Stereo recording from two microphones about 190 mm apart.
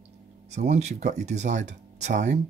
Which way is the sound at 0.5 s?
35° right (ahead or behind).